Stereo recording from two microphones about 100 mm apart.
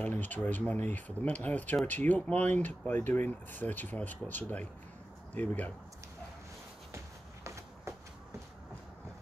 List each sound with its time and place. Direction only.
0.0 s speech: 15° left (ahead or behind)
7.4 s walk: 30° right (ahead or behind)